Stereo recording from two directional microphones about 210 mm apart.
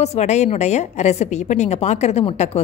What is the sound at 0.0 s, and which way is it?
A woman's voice, 30° left (ahead or behind).